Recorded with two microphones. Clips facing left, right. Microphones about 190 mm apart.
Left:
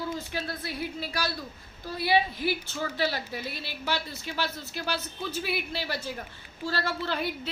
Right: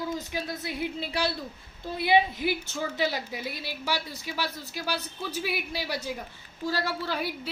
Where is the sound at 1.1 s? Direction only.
25° right (ahead or behind).